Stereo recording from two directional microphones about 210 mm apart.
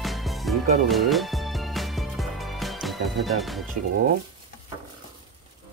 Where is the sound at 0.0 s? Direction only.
Centre (ahead or behind).